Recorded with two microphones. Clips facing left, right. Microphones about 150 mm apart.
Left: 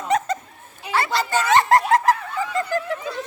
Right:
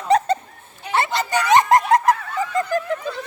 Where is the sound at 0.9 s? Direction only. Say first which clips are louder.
Right 1 dB; 20° right (ahead or behind).